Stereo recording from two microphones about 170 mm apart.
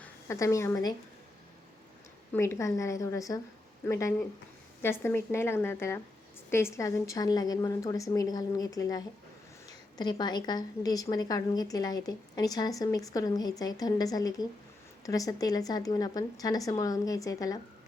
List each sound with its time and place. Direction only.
0.0 s a woman's voice: 15° left (ahead or behind)
2.3 s a woman's voice: 15° left (ahead or behind)